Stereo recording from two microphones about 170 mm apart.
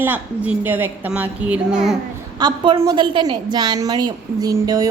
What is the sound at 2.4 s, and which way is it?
A woman's voice, 30° right (ahead or behind).